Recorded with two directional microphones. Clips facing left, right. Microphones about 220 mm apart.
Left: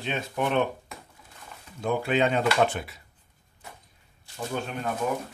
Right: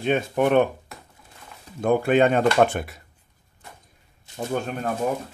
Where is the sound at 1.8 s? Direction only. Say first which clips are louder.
Right 6 dB; 50° right (ahead or behind).